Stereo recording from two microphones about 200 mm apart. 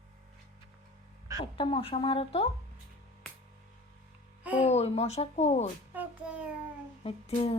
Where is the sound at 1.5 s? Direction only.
25° left (ahead or behind).